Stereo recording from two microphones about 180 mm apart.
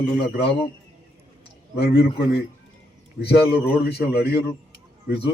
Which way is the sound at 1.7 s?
60° left (ahead or behind).